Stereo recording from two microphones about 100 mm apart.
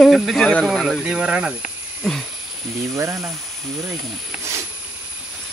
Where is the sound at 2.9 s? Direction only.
30° right (ahead or behind).